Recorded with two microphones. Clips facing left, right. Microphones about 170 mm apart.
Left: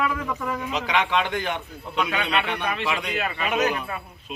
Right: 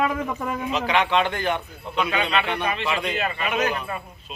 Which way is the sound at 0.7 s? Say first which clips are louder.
Right 3 dB; 15° left (ahead or behind).